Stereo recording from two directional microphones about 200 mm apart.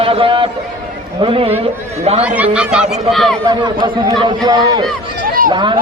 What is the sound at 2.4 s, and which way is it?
Speech, 5° right (ahead or behind).